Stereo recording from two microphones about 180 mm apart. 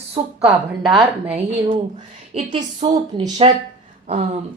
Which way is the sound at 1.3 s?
35° right (ahead or behind).